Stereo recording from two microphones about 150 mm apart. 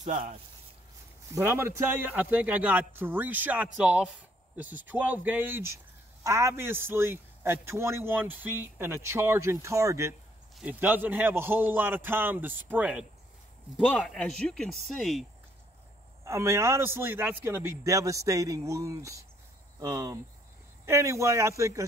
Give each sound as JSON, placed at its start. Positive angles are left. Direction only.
{"t": 0.0, "sound": "speech", "side_deg": -50}
{"t": 1.3, "sound": "a man's voice", "side_deg": -15}
{"t": 10.5, "sound": "a man's voice", "side_deg": -10}
{"t": 13.7, "sound": "speech", "side_deg": 5}
{"t": 16.3, "sound": "a man's voice", "side_deg": -20}